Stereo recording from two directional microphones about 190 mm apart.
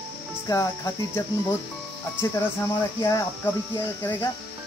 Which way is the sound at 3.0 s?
15° left (ahead or behind).